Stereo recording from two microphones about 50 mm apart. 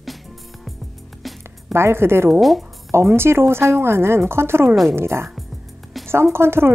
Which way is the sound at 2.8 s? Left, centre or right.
Right.